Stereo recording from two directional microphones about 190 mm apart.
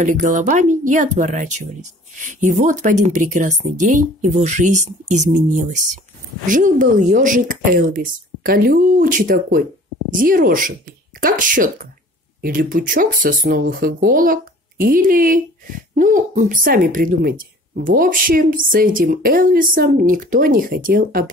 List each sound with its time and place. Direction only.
0.0 s a woman's voice: 40° right (ahead or behind)